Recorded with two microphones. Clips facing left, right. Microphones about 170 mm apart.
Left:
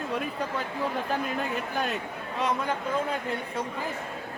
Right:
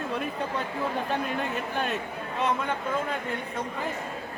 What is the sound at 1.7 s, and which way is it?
Speech, 35° left (ahead or behind).